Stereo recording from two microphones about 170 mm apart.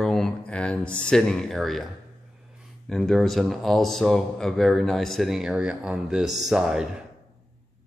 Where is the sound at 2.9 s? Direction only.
Centre (ahead or behind).